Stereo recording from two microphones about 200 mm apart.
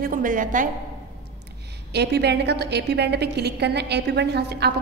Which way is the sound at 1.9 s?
55° right (ahead or behind).